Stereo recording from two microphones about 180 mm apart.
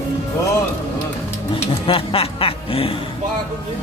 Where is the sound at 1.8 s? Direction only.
30° left (ahead or behind).